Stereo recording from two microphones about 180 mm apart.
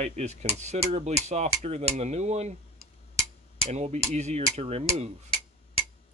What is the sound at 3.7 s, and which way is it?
Speech, 40° right (ahead or behind).